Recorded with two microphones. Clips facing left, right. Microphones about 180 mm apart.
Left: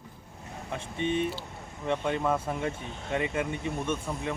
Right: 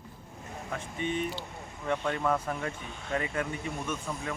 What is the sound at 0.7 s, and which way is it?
Speech, 25° left (ahead or behind).